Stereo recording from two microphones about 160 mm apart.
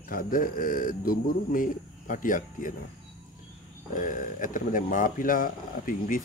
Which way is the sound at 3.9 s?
55° left (ahead or behind).